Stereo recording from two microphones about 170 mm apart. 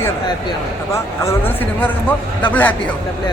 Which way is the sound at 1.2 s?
15° left (ahead or behind).